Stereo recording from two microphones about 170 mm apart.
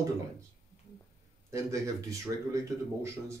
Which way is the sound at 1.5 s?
20° right (ahead or behind).